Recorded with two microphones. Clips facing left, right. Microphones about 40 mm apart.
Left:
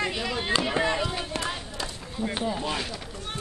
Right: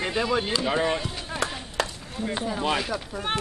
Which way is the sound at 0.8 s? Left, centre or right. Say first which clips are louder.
Even; left.